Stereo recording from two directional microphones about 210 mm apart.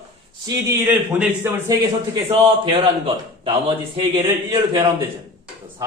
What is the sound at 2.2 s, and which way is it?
A man's voice, 25° right (ahead or behind).